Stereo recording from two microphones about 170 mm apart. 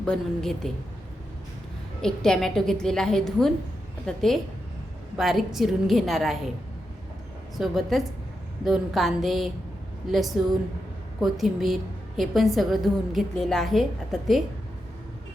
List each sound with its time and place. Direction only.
0.0 s a woman's voice: 5° left (ahead or behind)
2.0 s a woman's voice: 5° left (ahead or behind)
7.5 s a woman's voice: centre (ahead or behind)